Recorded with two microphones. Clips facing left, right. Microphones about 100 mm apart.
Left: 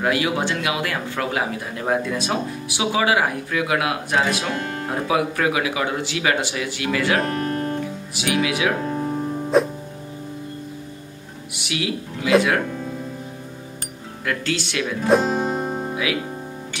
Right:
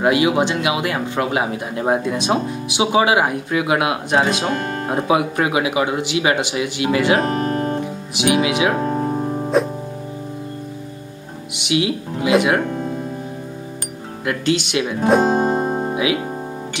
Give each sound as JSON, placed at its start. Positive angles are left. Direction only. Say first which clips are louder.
{"t": 0.0, "sound": "speech", "louder": "right 5 dB", "side_deg": -20}
{"t": 4.5, "sound": "speech", "louder": "right 4 dB", "side_deg": -35}
{"t": 7.3, "sound": "guitar", "louder": "right 4 dB", "side_deg": -35}
{"t": 7.8, "sound": "speech", "louder": "right 6 dB", "side_deg": -20}
{"t": 8.7, "sound": "music", "louder": "right 4 dB", "side_deg": -40}
{"t": 9.5, "sound": "music", "louder": "even", "side_deg": 0}
{"t": 11.5, "sound": "speech", "louder": "right 7 dB", "side_deg": -20}
{"t": 14.2, "sound": "speech", "louder": "right 5 dB", "side_deg": -20}
{"t": 15.2, "sound": "music", "louder": "right 5 dB", "side_deg": -50}
{"t": 15.9, "sound": "music", "louder": "right 5 dB", "side_deg": -25}